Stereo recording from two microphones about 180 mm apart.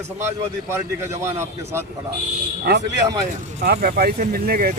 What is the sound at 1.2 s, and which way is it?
Speech, 15° right (ahead or behind).